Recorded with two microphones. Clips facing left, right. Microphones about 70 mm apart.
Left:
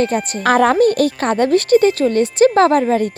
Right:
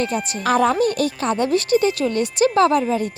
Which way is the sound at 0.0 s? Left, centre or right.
Left.